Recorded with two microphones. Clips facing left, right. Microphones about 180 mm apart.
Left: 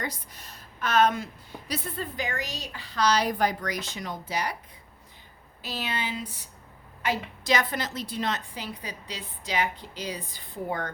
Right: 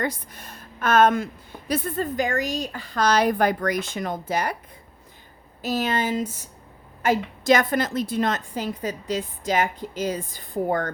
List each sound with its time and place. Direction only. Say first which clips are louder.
0.0 s speech: right 8 dB; 55° right (ahead or behind)
5.6 s speech: right 9 dB; 45° right (ahead or behind)